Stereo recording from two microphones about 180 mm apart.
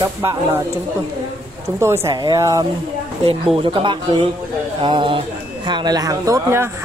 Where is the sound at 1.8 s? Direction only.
15° right (ahead or behind).